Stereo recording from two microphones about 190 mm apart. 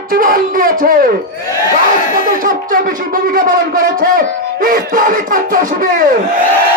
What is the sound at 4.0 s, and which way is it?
Speech, 50° right (ahead or behind).